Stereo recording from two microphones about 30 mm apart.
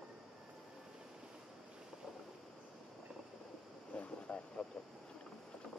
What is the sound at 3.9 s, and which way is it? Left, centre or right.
Vehicle, left.